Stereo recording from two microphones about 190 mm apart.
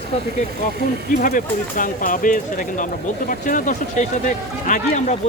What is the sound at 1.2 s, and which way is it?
Speech, 45° left (ahead or behind).